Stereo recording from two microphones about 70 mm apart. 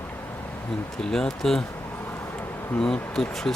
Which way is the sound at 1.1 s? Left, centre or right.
Centre.